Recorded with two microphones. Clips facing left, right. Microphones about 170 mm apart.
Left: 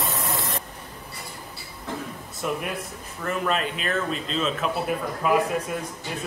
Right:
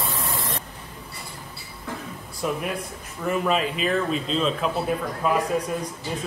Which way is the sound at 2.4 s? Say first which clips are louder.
Right 2 dB; centre (ahead or behind).